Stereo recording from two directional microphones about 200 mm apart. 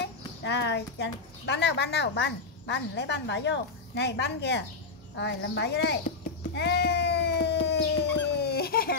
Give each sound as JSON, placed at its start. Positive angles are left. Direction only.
{"t": 0.0, "sound": "speech", "side_deg": 60}
{"t": 6.5, "sound": "dog", "side_deg": 55}